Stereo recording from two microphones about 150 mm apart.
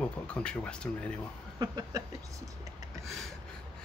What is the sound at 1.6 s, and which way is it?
Speech, 25° right (ahead or behind).